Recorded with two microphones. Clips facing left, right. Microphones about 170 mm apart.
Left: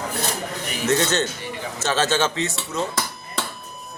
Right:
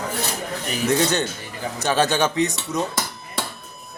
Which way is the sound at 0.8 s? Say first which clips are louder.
Even; 10° right (ahead or behind).